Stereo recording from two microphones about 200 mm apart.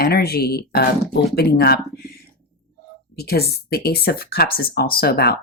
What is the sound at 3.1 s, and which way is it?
Speech, 55° left (ahead or behind).